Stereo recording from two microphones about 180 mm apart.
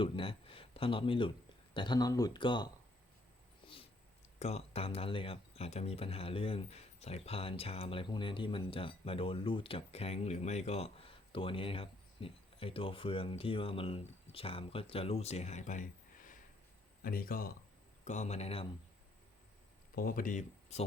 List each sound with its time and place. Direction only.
0.0 s speech: 30° left (ahead or behind)
3.6 s a sound: 30° left (ahead or behind)
4.4 s speech: 35° left (ahead or behind); by 17.5 s 55° left (ahead or behind)
18.0 s speech: 40° left (ahead or behind)
20.0 s speech: 50° left (ahead or behind)